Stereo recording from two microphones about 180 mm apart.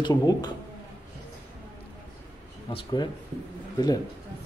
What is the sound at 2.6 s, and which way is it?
Speech, 25° left (ahead or behind).